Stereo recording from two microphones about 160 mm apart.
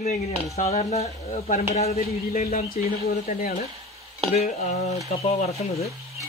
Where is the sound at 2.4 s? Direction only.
70° left (ahead or behind).